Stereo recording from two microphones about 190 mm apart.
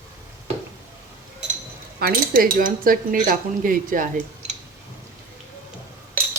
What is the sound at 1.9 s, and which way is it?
Speech, 50° right (ahead or behind).